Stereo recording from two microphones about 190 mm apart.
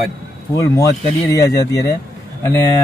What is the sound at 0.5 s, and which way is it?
Speech, 15° left (ahead or behind).